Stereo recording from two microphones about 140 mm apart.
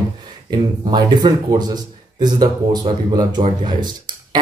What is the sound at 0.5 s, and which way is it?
Speech, 30° right (ahead or behind).